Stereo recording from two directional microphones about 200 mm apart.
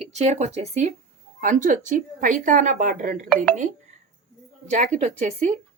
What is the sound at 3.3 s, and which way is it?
Speech, 5° left (ahead or behind).